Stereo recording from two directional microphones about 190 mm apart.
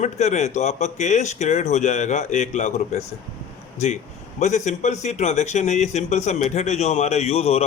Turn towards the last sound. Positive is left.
turn(degrees=35)  # may be behind; listen again after turning